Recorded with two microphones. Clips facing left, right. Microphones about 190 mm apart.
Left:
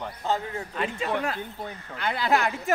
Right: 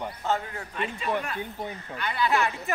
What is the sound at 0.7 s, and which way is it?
Speech, 85° left.